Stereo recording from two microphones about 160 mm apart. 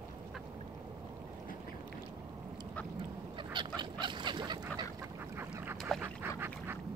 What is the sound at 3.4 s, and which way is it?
Duck, 30° right (ahead or behind).